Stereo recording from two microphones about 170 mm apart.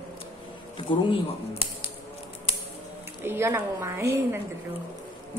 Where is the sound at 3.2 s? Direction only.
15° right (ahead or behind).